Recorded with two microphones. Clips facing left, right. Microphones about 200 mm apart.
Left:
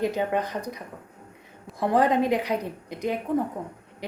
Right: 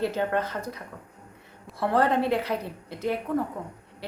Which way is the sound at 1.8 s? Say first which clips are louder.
Left 2 dB; 15° left (ahead or behind).